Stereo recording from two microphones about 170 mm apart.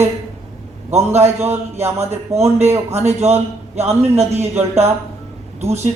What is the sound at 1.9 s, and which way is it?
A man's voice, 40° right (ahead or behind).